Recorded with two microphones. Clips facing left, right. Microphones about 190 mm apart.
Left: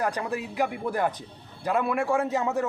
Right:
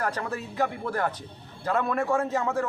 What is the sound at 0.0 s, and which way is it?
A man's voice, 15° left (ahead or behind).